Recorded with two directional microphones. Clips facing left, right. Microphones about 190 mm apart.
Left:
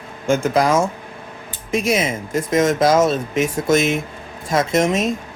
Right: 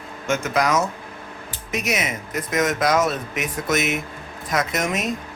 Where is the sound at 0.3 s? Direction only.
30° left (ahead or behind).